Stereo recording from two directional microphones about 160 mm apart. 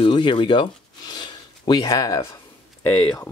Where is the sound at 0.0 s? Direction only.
30° left (ahead or behind).